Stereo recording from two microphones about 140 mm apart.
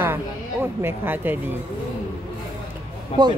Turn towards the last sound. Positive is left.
turn(degrees=45)  # may be behind; listen again after turning